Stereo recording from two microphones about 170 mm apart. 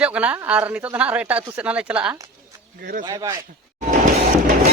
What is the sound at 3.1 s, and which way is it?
Speech, 20° right (ahead or behind).